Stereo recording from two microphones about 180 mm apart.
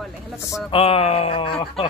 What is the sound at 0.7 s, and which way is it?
Speech, 30° left (ahead or behind).